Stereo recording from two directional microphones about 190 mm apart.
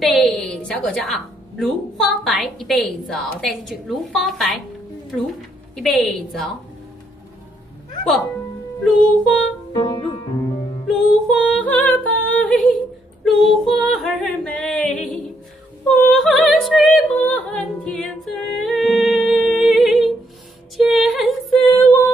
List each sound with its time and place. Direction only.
0.0 s a woman's voice: centre (ahead or behind)
5.8 s a woman's voice: centre (ahead or behind)
8.8 s a woman's voice: centre (ahead or behind)
9.7 s speech: 25° left (ahead or behind)
10.9 s music: 5° left (ahead or behind)
13.2 s a woman's voice: centre (ahead or behind)
16.1 s a woman's voice: centre (ahead or behind)
17.2 s singing: 5° left (ahead or behind)
20.7 s music: centre (ahead or behind)